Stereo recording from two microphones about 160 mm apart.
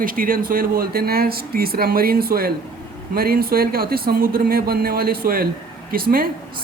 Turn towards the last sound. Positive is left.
turn(degrees=-65)  # may be behind; listen again after turning